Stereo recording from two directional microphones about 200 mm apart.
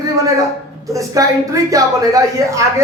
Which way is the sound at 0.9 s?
15° right (ahead or behind).